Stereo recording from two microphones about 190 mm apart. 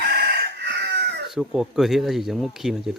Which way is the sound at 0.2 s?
60° right (ahead or behind).